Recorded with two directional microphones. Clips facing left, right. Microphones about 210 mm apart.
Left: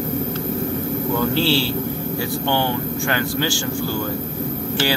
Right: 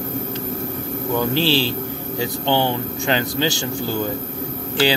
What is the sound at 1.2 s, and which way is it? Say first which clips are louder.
Speech: right 1 dB; 15° right (ahead or behind).